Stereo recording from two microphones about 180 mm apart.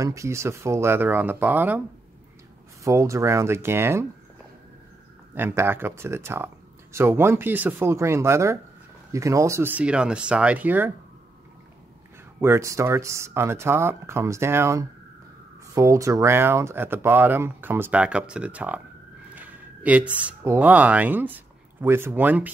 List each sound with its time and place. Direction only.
0.0 s speech: 15° right (ahead or behind)
2.8 s speech: 15° right (ahead or behind)
5.3 s speech: 10° right (ahead or behind)
12.4 s speech: 15° right (ahead or behind)
19.3 s a sound: 10° right (ahead or behind)
20.4 s speech: 10° right (ahead or behind)